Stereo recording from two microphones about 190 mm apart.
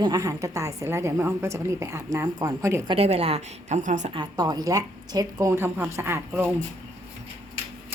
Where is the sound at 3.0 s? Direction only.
30° right (ahead or behind).